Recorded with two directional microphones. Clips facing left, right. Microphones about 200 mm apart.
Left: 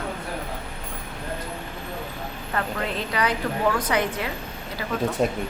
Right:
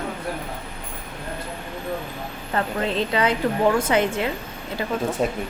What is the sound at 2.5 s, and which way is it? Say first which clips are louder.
A woman's voice: right 4 dB; 25° right (ahead or behind).